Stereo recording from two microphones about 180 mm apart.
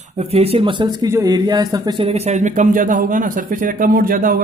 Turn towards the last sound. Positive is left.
turn(degrees=-55)  # may be behind; listen again after turning